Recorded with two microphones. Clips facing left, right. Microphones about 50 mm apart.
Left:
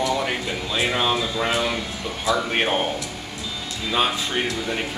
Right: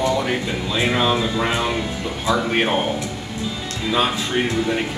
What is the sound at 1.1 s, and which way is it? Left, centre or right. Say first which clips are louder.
A man's voice: right 2 dB; centre.